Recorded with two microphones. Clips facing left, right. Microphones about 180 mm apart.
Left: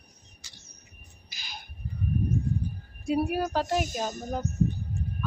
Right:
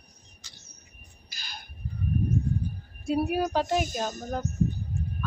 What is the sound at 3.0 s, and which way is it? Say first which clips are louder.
A woman's voice: right 1 dB; 10° left (ahead or behind).